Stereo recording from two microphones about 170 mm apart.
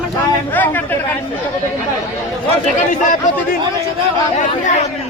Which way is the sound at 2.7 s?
50° left (ahead or behind).